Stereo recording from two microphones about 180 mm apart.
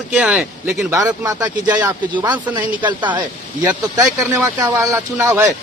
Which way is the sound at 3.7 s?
15° right (ahead or behind).